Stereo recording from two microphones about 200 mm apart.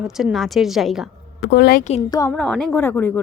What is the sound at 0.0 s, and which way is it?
A woman's voice, centre (ahead or behind).